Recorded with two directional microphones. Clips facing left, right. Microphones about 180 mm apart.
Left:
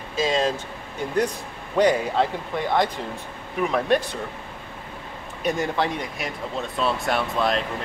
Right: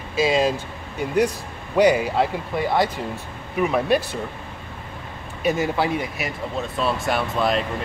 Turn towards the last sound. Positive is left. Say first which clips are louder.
# right 1 dB
turn(degrees=0)  # may be behind; listen again after turning